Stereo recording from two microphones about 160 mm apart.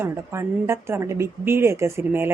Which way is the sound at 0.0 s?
15° right (ahead or behind).